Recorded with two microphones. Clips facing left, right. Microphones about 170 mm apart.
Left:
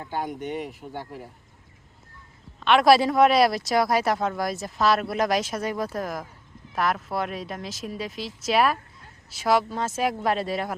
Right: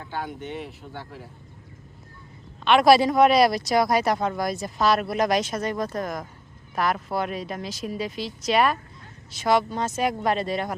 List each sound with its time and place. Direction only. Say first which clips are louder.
0.2 s speech: left 3 dB; 45° left (ahead or behind)
2.6 s speech: right 1 dB; centre (ahead or behind)